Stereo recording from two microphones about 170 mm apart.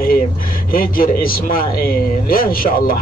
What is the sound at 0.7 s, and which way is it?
A man's voice, 55° left (ahead or behind).